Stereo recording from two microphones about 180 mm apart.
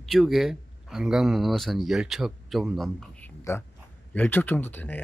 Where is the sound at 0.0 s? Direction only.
Centre (ahead or behind).